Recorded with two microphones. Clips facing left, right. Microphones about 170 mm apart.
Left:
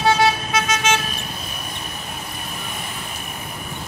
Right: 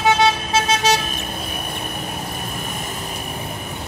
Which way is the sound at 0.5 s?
35° right (ahead or behind).